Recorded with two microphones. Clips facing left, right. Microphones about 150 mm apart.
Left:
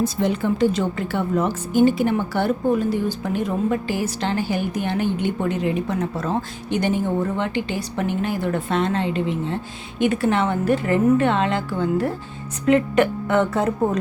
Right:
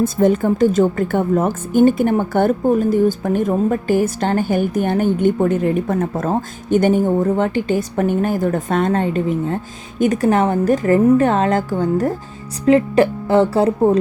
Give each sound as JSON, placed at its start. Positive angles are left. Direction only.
{"t": 0.0, "sound": "a woman's voice", "side_deg": -45}